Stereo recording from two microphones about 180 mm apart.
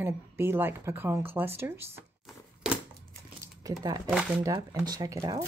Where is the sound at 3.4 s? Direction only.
20° right (ahead or behind).